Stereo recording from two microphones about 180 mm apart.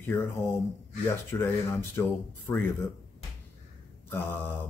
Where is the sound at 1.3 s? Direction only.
15° left (ahead or behind).